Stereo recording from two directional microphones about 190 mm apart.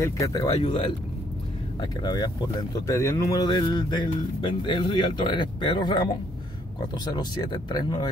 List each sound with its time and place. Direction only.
0.0 s speech: 15° left (ahead or behind)